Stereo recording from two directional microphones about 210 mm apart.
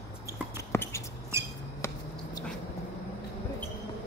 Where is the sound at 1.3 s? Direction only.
15° right (ahead or behind).